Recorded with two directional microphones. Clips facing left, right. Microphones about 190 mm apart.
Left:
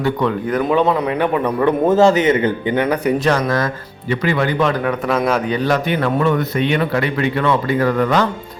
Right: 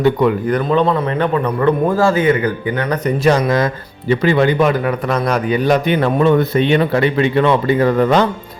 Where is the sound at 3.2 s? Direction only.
15° right (ahead or behind).